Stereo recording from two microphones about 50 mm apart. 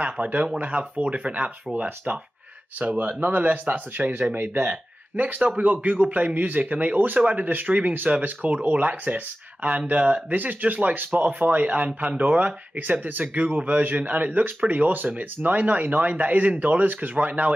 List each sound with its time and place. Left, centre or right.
0.0 s speech: right
4.6 s speech: right
12.2 s speech: right